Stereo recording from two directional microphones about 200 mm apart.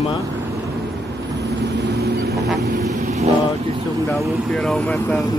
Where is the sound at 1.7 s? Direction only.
60° right (ahead or behind).